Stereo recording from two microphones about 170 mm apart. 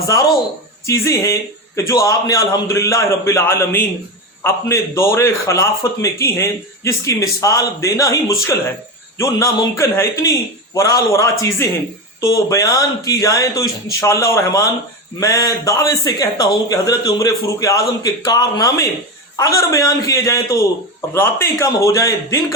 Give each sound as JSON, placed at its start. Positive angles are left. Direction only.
{"t": 0.9, "sound": "a man's voice", "side_deg": 15}